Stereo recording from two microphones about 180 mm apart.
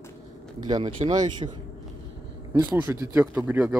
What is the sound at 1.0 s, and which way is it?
Speech, 40° right (ahead or behind).